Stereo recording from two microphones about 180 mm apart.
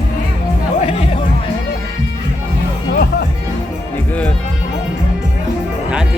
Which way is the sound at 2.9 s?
60° left (ahead or behind).